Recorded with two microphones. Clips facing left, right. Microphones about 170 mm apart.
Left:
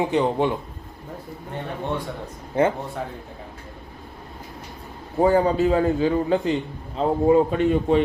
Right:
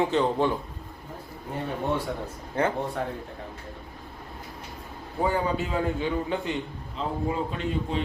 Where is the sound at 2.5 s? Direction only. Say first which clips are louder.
Left 6 dB; 20° left (ahead or behind).